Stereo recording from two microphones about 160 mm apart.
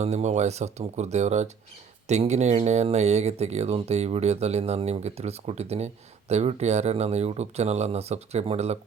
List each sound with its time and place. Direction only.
0.0 s speech: 45° right (ahead or behind)